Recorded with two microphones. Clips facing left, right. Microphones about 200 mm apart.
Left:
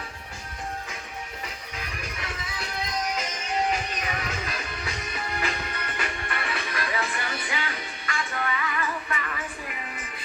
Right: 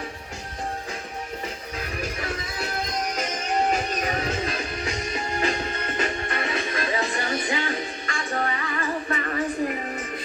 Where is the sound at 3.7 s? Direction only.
40° right (ahead or behind); by 7.1 s 25° right (ahead or behind).